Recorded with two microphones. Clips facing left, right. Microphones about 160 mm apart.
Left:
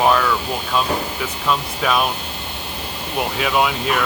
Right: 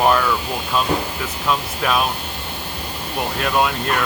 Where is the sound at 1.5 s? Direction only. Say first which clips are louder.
Left 1 dB; centre (ahead or behind).